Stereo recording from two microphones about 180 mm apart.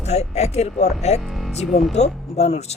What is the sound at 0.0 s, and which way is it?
Speech, 35° left (ahead or behind).